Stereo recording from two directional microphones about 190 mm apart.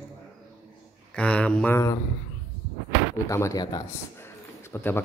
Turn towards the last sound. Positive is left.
turn(degrees=10)  # may be behind; listen again after turning